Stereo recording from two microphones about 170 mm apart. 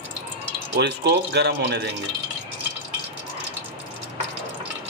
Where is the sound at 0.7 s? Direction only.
80° right.